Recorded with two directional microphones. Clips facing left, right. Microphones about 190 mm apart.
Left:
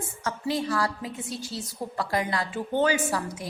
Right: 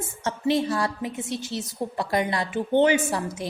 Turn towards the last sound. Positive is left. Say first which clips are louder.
# right 3 dB
turn(degrees=-25)  # may be behind; listen again after turning